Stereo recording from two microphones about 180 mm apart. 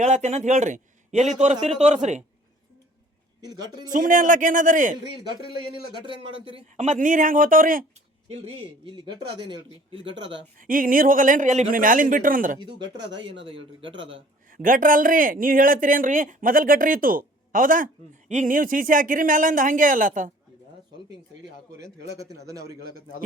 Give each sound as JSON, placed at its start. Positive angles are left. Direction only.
{"t": 0.0, "sound": "a man's voice", "side_deg": -40}
{"t": 3.4, "sound": "a man's voice", "side_deg": -20}
{"t": 3.9, "sound": "speech", "side_deg": -45}
{"t": 5.5, "sound": "a man's voice", "side_deg": -25}
{"t": 6.7, "sound": "speech", "side_deg": -40}
{"t": 8.3, "sound": "a man's voice", "side_deg": -30}
{"t": 10.6, "sound": "speech", "side_deg": -50}
{"t": 12.5, "sound": "a man's voice", "side_deg": -25}
{"t": 14.4, "sound": "speech", "side_deg": -50}
{"t": 22.3, "sound": "a man's voice", "side_deg": -20}